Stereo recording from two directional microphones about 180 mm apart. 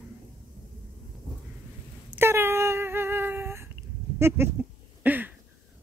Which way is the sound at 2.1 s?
15° right (ahead or behind).